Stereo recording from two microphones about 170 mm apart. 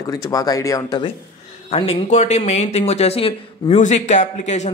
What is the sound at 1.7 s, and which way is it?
Speech, 35° left (ahead or behind).